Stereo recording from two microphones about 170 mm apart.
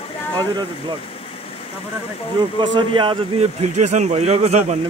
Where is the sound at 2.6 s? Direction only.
30° right (ahead or behind).